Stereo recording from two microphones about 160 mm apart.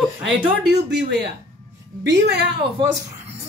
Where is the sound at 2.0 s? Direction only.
90° right.